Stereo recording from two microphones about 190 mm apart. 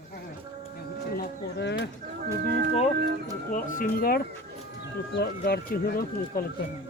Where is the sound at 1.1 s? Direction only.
65° left (ahead or behind).